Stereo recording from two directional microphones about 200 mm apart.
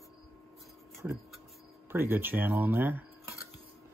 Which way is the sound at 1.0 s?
10° right (ahead or behind).